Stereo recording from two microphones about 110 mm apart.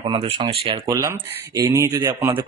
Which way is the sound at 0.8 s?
30° right (ahead or behind).